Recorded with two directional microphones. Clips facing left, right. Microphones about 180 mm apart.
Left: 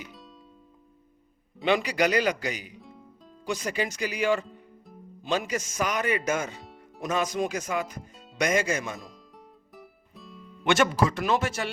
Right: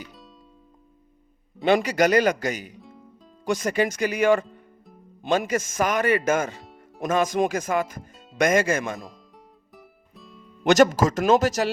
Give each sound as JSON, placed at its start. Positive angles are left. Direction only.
{"t": 0.0, "sound": "music", "side_deg": 0}
{"t": 1.6, "sound": "speech", "side_deg": -45}
{"t": 2.7, "sound": "music", "side_deg": 0}
{"t": 3.4, "sound": "speech", "side_deg": -50}
{"t": 6.6, "sound": "music", "side_deg": 0}
{"t": 7.0, "sound": "speech", "side_deg": -50}
{"t": 9.7, "sound": "music", "side_deg": 0}
{"t": 10.7, "sound": "speech", "side_deg": -40}